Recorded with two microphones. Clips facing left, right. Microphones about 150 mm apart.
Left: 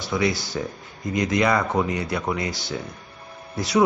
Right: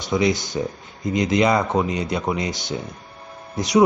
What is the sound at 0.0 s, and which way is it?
Speech, 20° right (ahead or behind).